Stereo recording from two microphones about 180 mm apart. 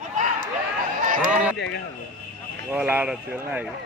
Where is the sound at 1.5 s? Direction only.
70° left (ahead or behind).